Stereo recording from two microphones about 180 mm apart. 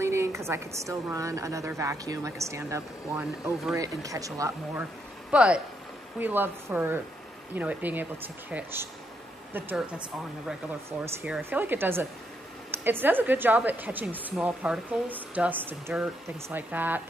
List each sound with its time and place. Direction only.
0.0 s a woman's voice: 15° right (ahead or behind)
3.7 s a woman's voice: 20° right (ahead or behind)
5.3 s a woman's voice: 5° right (ahead or behind)